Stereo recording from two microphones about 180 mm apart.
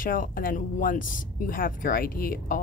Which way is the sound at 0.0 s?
50° left (ahead or behind).